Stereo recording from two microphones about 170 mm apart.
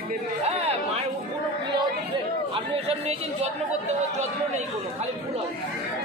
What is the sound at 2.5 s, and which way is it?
Speech, 35° right (ahead or behind).